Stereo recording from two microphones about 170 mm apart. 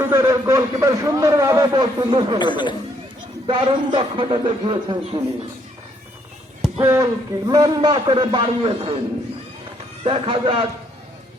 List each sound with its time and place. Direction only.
0.0 s a man's voice: 15° right (ahead or behind)
2.4 s speech: 25° left (ahead or behind)
3.4 s a man's voice: 30° right (ahead or behind)
6.8 s a man's voice: 20° right (ahead or behind)
10.0 s a man's voice: 30° right (ahead or behind)